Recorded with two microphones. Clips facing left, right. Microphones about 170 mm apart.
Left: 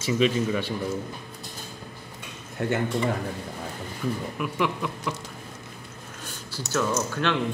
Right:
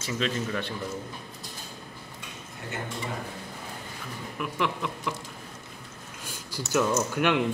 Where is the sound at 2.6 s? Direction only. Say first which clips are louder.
Left 14 dB; 70° left (ahead or behind).